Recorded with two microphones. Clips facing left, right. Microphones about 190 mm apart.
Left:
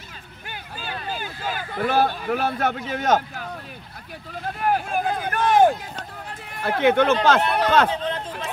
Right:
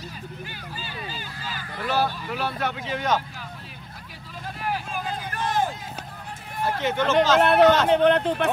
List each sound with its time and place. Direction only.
0.5 s a sound: 55° left (ahead or behind)
4.6 s vehicle: 55° left (ahead or behind)
6.2 s run: 65° left (ahead or behind)
7.4 s a man's voice: 60° right (ahead or behind)